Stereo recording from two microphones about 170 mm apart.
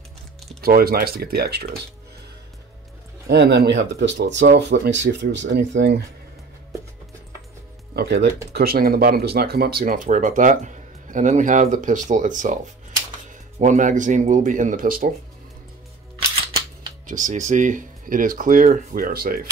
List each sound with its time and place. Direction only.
0.6 s speech: 65° right (ahead or behind)
3.3 s speech: 75° right (ahead or behind)
7.9 s speech: 75° right (ahead or behind)
8.5 s speech: 65° right (ahead or behind); by 12.5 s 50° right (ahead or behind)
13.6 s speech: 45° right (ahead or behind)
17.0 s speech: 50° right (ahead or behind)